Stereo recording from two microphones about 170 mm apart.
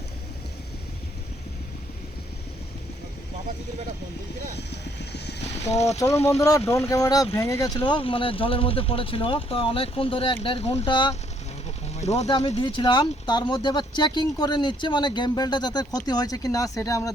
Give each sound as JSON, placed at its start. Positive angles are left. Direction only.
{"t": 4.5, "sound": "vehicle", "side_deg": 80}
{"t": 5.4, "sound": "vehicle", "side_deg": 40}
{"t": 6.7, "sound": "speech", "side_deg": 15}
{"t": 11.9, "sound": "speech", "side_deg": 40}